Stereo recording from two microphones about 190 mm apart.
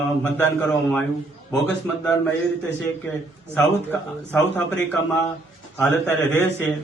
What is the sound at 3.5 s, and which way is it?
A man's voice, 5° left (ahead or behind).